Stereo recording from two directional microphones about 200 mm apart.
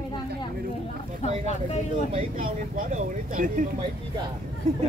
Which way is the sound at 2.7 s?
40° right (ahead or behind).